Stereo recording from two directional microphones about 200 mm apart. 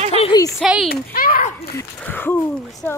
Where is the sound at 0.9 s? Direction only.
45° left (ahead or behind).